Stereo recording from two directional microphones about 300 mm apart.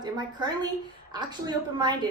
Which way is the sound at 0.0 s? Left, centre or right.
Centre.